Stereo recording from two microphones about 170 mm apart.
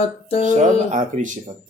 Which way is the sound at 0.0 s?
35° left (ahead or behind).